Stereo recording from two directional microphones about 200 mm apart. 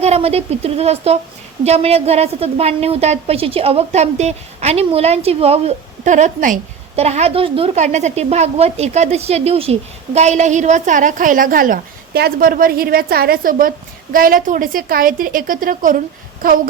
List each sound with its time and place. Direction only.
0.0 s a woman's voice: 30° right (ahead or behind)